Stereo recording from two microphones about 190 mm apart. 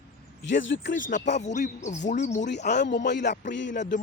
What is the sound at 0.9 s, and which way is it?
Speech, 45° left (ahead or behind).